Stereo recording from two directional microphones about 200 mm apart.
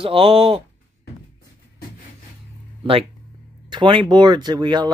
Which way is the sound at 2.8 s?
30° right (ahead or behind).